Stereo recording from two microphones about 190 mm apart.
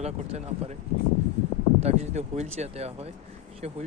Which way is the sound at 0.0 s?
35° right (ahead or behind).